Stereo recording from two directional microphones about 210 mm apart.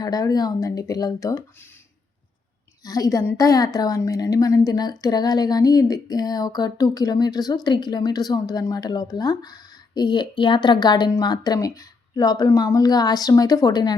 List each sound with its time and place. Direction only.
0.0 s speech: 20° left (ahead or behind)
2.8 s a woman's voice: 15° left (ahead or behind)